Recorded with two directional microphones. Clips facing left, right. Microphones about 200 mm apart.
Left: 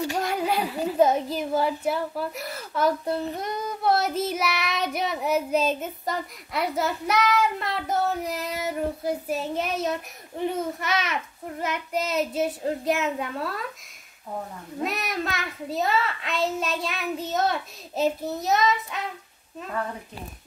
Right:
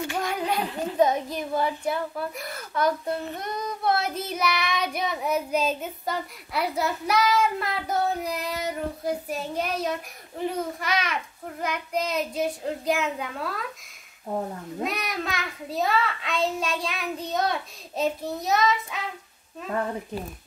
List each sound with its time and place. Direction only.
0.2 s child singing: 5° left (ahead or behind)
14.8 s child singing: centre (ahead or behind)